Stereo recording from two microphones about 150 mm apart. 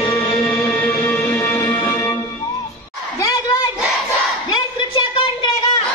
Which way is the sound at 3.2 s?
25° left (ahead or behind).